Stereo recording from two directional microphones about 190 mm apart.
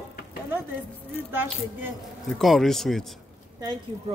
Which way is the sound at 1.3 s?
10° right (ahead or behind).